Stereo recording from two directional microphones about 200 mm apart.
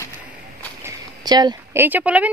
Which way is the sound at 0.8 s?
20° right (ahead or behind).